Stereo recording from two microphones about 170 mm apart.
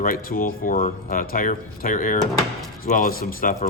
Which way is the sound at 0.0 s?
55° left (ahead or behind).